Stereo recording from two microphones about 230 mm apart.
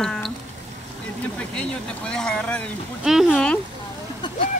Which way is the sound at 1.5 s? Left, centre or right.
Centre.